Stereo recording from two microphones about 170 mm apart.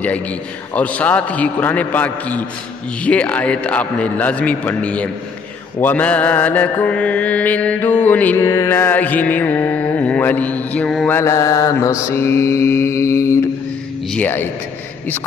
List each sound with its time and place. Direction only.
0.7 s mantra: 10° left (ahead or behind)
11.1 s mantra: 15° left (ahead or behind)